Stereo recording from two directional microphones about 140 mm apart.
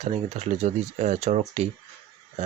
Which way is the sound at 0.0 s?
50° right (ahead or behind).